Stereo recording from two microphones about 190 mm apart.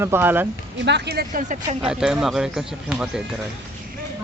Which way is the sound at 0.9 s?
60° right (ahead or behind).